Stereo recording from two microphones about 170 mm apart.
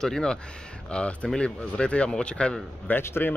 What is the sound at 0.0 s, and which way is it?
Speech, 5° left (ahead or behind).